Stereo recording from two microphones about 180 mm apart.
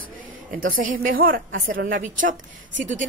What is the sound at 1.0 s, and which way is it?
A woman's voice, 50° right (ahead or behind).